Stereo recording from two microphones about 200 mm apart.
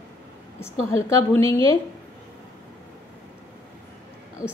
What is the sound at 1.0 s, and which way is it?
Speech, 15° left (ahead or behind).